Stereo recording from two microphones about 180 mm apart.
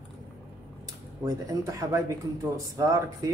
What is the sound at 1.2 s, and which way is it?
Speech, 20° right (ahead or behind).